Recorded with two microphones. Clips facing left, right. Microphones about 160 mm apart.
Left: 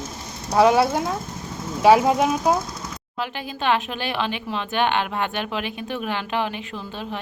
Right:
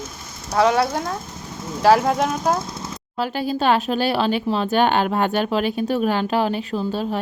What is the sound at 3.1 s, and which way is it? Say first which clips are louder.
Speech: right 8 dB; 35° right (ahead or behind).